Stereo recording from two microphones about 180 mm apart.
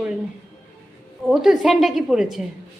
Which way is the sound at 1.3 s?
Centre (ahead or behind).